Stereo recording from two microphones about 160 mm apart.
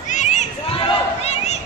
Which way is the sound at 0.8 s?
40° left (ahead or behind).